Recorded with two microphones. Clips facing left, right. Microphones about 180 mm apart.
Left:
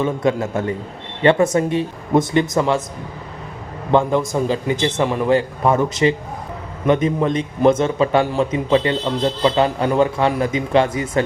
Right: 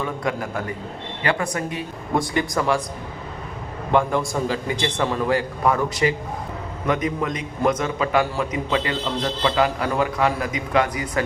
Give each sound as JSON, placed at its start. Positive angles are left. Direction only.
{"t": 0.0, "sound": "a man's voice", "side_deg": 25}
{"t": 3.9, "sound": "a man's voice", "side_deg": 20}